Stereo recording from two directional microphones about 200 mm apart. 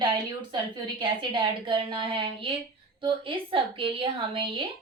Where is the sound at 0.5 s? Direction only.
25° right (ahead or behind).